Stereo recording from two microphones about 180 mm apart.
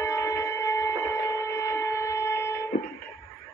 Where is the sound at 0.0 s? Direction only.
15° left (ahead or behind).